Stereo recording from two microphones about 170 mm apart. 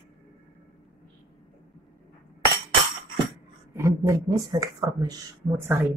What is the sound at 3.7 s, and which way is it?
A woman's voice, 15° right (ahead or behind).